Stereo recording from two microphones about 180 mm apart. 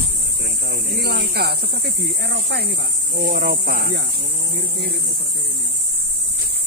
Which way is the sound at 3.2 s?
50° right (ahead or behind).